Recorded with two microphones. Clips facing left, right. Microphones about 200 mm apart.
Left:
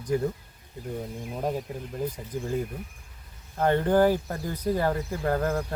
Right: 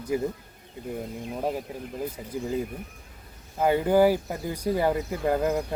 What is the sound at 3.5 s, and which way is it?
Speech, 10° right (ahead or behind).